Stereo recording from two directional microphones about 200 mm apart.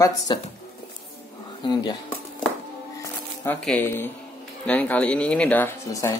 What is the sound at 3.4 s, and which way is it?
Speech, 10° left (ahead or behind).